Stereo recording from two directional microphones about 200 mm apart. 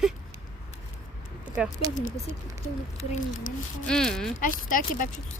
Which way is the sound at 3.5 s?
40° left (ahead or behind).